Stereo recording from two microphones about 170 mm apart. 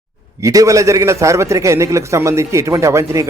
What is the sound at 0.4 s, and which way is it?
Speech, 20° right (ahead or behind).